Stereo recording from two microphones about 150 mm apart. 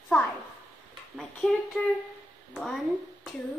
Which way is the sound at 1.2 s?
5° left (ahead or behind).